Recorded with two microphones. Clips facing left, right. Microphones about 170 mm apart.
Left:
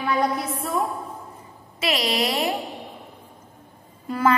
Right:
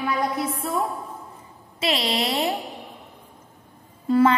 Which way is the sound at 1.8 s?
30° right (ahead or behind).